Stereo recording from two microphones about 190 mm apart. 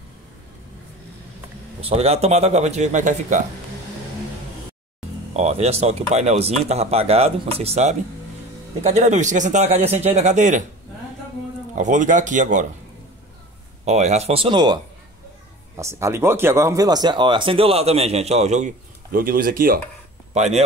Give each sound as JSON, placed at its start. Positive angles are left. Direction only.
{"t": 1.8, "sound": "speech", "side_deg": -30}
{"t": 5.3, "sound": "speech", "side_deg": -35}
{"t": 11.7, "sound": "speech", "side_deg": -40}
{"t": 13.8, "sound": "speech", "side_deg": -35}
{"t": 19.1, "sound": "speech", "side_deg": -50}
{"t": 20.3, "sound": "speech", "side_deg": -35}